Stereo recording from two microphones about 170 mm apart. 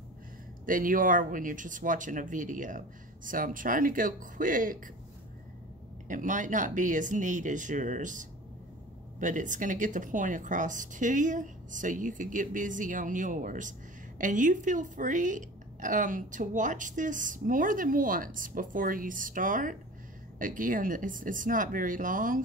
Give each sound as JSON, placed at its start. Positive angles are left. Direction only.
{"t": 0.7, "sound": "speech", "side_deg": -55}
{"t": 6.0, "sound": "speech", "side_deg": -50}